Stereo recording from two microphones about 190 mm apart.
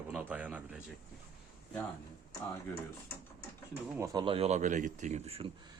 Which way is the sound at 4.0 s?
20° right (ahead or behind).